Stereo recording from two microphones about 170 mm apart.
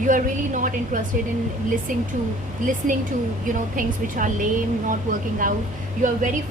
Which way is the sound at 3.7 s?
50° right (ahead or behind).